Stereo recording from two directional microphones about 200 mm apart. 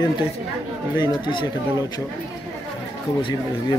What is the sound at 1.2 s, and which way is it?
Speech, 20° left (ahead or behind).